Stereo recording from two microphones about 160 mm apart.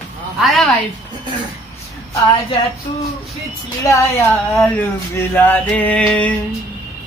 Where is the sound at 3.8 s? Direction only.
20° left (ahead or behind).